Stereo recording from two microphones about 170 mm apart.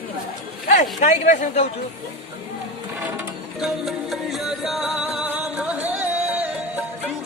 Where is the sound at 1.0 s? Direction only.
45° left (ahead or behind).